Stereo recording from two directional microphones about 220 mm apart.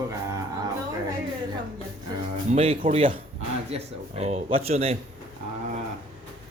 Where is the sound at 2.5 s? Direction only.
25° right (ahead or behind).